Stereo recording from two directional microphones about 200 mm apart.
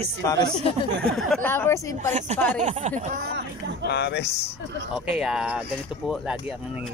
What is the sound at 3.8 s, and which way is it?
Speech, 55° left (ahead or behind).